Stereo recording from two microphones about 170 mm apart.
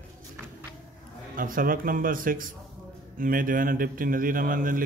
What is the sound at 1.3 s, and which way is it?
A man's voice, 55° right (ahead or behind).